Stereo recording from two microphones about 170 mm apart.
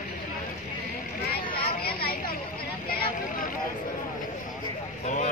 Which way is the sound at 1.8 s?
65° left (ahead or behind).